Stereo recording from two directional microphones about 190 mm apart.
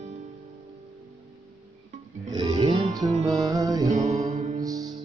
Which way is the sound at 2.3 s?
25° right (ahead or behind).